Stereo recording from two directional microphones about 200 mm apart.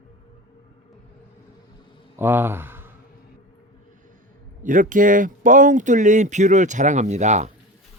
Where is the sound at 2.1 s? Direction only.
10° right (ahead or behind).